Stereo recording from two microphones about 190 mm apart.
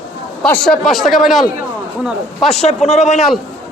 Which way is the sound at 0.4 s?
5° left (ahead or behind).